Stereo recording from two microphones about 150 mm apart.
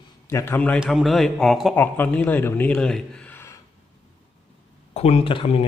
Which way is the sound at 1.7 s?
10° left (ahead or behind).